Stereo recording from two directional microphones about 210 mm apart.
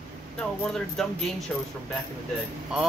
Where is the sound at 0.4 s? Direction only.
Centre (ahead or behind).